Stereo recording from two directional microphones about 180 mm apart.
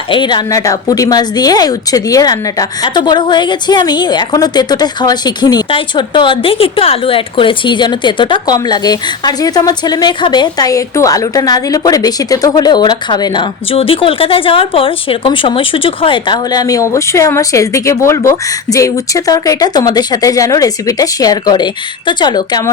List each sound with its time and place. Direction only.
0.1 s a woman's voice: 25° left (ahead or behind)